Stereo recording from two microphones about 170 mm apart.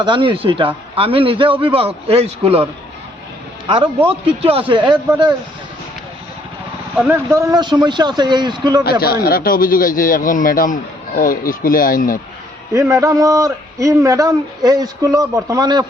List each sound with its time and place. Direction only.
0.0 s speech: 30° right (ahead or behind)
3.7 s speech: 35° right (ahead or behind)
7.0 s a man's voice: 10° right (ahead or behind)
8.8 s a man's voice: 65° left (ahead or behind)
12.7 s a man's voice: 20° right (ahead or behind)